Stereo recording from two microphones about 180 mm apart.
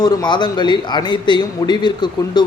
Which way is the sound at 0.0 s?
25° left (ahead or behind).